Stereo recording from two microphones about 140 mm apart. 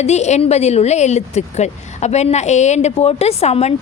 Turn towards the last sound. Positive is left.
turn(degrees=50)  # may be behind; listen again after turning